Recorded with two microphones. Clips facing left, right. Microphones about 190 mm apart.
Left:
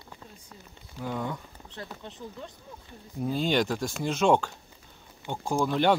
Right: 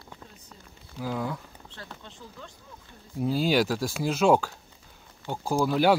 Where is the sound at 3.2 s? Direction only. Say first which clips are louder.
Right 2 dB; 5° right (ahead or behind).